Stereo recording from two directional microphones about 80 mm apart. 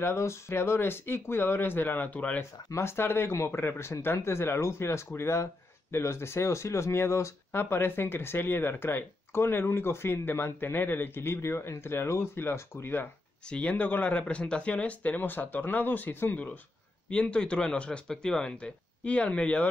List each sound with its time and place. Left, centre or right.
0.0 s speech: left; by 2.4 s centre
2.7 s speech: left
13.5 s a man's voice: centre